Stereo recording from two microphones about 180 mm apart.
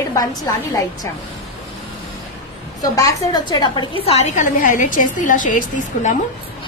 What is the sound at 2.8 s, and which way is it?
A woman's voice, 20° left (ahead or behind).